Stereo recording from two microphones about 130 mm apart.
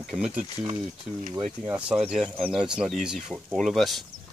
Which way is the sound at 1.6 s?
10° right (ahead or behind).